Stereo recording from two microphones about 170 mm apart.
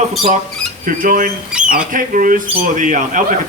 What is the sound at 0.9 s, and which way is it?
A man's voice, 55° right (ahead or behind).